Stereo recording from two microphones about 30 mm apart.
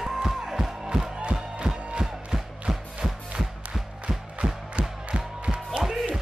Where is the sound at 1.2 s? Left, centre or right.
Right.